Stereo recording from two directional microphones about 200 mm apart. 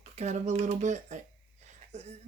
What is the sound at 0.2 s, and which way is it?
Speech, 35° right (ahead or behind).